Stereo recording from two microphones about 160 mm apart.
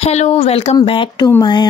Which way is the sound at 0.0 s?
40° left (ahead or behind).